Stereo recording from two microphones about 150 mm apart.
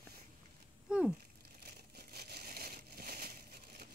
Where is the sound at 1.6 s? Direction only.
90° right.